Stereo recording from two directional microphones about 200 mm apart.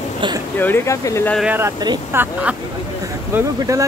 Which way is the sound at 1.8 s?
20° right (ahead or behind).